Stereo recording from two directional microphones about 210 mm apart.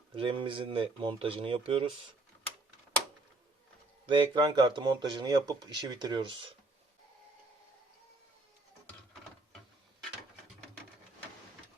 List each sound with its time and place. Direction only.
0.2 s speech: 25° right (ahead or behind)
4.0 s speech: 20° right (ahead or behind)